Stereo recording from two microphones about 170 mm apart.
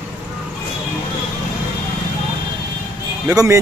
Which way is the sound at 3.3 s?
20° right (ahead or behind).